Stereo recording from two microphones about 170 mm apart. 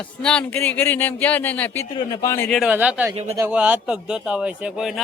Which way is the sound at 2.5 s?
Centre (ahead or behind).